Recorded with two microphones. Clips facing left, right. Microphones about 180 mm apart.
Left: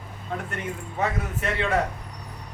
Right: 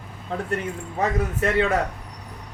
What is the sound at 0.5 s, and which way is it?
Speech, 35° right (ahead or behind).